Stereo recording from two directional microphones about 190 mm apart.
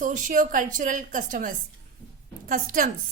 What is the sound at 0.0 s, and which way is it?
A woman's voice, 40° right (ahead or behind).